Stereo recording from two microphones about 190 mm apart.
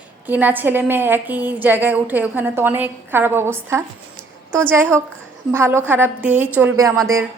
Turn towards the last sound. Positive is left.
turn(degrees=-15)  # may be behind; listen again after turning